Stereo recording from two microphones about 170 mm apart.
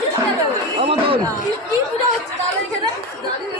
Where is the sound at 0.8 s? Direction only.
35° right (ahead or behind).